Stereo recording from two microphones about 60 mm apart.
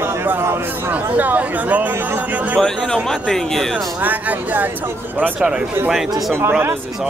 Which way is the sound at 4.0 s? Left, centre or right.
Right.